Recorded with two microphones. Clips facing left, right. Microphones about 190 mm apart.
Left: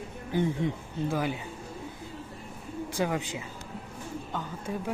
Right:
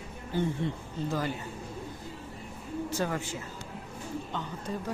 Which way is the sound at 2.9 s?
15° left (ahead or behind).